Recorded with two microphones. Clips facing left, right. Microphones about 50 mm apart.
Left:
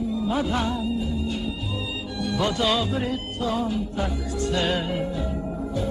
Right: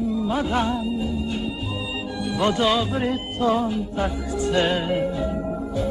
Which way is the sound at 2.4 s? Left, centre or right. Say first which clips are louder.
Right 4 dB; right.